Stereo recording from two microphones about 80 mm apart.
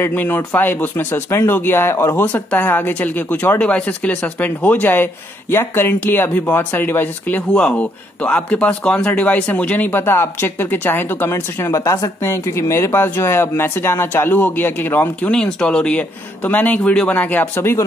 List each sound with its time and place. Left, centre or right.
0.0 s speech: left
15.3 s speech: centre